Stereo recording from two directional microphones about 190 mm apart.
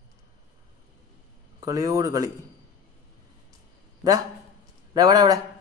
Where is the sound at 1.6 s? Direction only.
20° right (ahead or behind).